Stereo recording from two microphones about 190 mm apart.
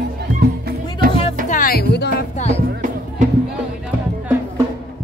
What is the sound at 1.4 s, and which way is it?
Music, 45° left (ahead or behind).